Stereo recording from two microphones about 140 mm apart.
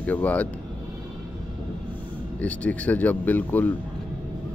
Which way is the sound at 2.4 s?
10° left (ahead or behind).